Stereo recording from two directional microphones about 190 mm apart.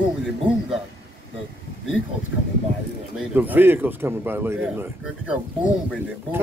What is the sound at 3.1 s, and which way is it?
A man's voice, 10° right (ahead or behind).